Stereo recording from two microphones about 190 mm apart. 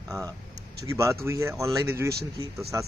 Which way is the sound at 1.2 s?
15° right (ahead or behind).